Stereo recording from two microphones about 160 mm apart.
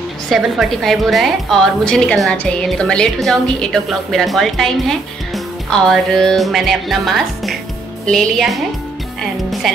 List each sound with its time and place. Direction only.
0.3 s a woman's voice: centre (ahead or behind)